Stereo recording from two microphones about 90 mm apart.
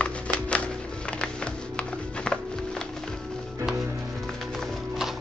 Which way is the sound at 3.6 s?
Centre (ahead or behind).